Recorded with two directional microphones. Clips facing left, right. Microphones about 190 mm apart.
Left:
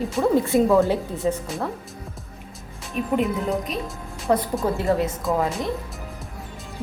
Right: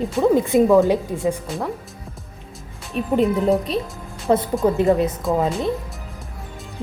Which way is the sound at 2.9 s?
30° right (ahead or behind).